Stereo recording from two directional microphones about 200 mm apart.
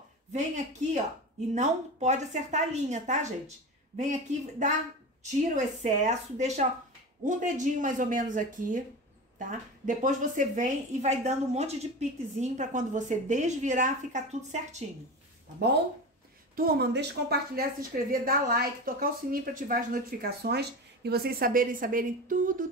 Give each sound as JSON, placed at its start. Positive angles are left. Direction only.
{"t": 1.5, "sound": "a woman's voice", "side_deg": -35}
{"t": 5.8, "sound": "a woman's voice", "side_deg": -35}
{"t": 16.5, "sound": "a woman's voice", "side_deg": -50}